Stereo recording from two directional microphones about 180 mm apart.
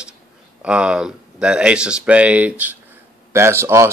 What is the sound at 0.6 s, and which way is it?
A man's voice, 5° right (ahead or behind).